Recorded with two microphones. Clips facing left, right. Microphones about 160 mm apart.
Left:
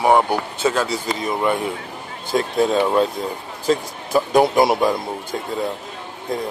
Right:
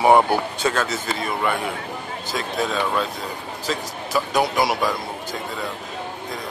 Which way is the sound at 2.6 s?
25° left (ahead or behind).